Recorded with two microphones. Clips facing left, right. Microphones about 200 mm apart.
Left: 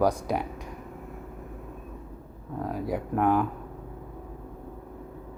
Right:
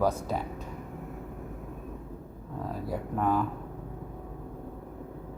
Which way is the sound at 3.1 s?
65° left (ahead or behind).